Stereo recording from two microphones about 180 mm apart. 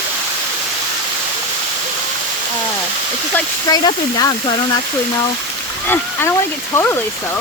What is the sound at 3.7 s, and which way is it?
Speech, 20° left (ahead or behind).